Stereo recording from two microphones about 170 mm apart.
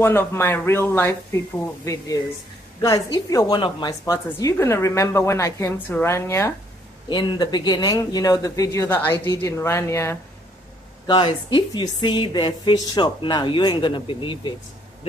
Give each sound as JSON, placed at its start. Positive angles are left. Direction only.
{"t": 0.0, "sound": "a woman's voice", "side_deg": 10}
{"t": 2.8, "sound": "a woman's voice", "side_deg": 20}
{"t": 7.1, "sound": "a woman's voice", "side_deg": 25}
{"t": 11.1, "sound": "a woman's voice", "side_deg": 25}